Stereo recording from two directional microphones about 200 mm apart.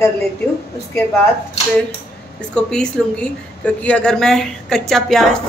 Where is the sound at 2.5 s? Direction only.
5° left (ahead or behind).